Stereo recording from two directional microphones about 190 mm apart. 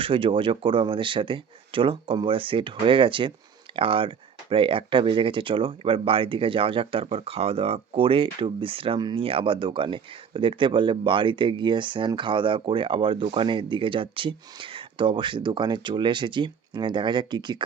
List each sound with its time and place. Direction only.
0.0 s speech: 30° right (ahead or behind)